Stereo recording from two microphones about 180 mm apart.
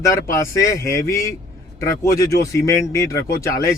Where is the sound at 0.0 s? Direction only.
15° left (ahead or behind).